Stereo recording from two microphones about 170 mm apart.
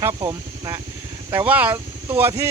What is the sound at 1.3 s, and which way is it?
Speech, 10° right (ahead or behind).